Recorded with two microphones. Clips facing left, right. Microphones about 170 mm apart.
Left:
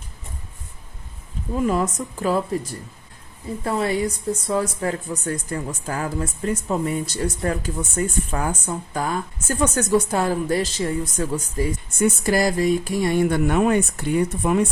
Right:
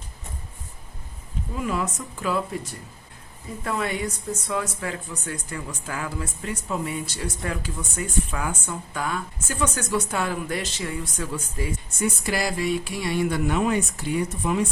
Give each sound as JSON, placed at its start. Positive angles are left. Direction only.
{"t": 1.5, "sound": "speech", "side_deg": 40}
{"t": 3.6, "sound": "speech", "side_deg": 35}